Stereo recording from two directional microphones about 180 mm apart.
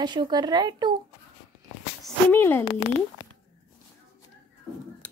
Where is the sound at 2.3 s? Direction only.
10° left (ahead or behind).